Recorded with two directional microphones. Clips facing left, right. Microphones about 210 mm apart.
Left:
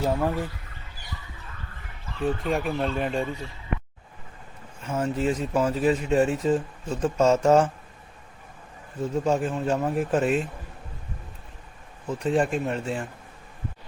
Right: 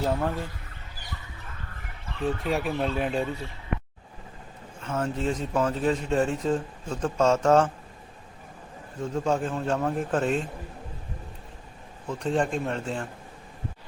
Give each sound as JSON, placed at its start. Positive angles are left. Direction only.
{"t": 0.0, "sound": "a man's voice", "side_deg": 10}
{"t": 2.2, "sound": "speech", "side_deg": 0}
{"t": 4.8, "sound": "a man's voice", "side_deg": 10}
{"t": 9.2, "sound": "a man's voice", "side_deg": 10}
{"t": 12.0, "sound": "a man's voice", "side_deg": 5}